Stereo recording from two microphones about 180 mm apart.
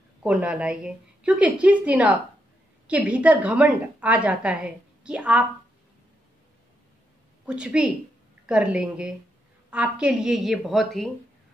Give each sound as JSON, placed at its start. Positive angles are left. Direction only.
{"t": 0.2, "sound": "a woman's voice", "side_deg": -5}
{"t": 7.4, "sound": "a woman's voice", "side_deg": -5}